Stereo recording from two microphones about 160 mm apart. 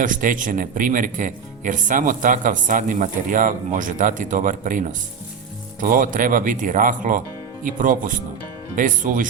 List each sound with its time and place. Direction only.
0.0 s speech: 55° right (ahead or behind)